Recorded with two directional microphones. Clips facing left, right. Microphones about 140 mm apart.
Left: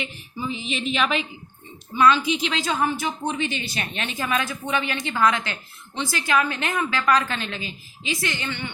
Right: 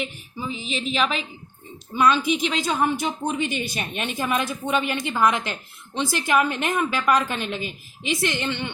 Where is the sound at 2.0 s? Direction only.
15° right (ahead or behind).